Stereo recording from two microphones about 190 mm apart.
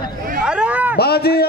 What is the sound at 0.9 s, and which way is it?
Speech, 55° left (ahead or behind).